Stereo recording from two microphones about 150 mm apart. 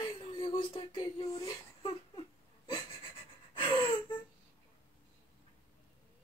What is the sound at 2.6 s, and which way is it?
Pant, 30° left (ahead or behind).